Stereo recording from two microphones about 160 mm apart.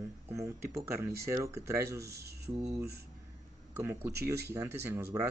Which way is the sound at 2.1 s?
90° right.